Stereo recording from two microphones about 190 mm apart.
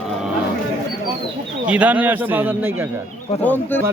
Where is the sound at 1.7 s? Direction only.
5° right (ahead or behind).